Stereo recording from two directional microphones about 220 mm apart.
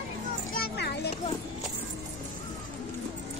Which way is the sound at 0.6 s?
45° left (ahead or behind).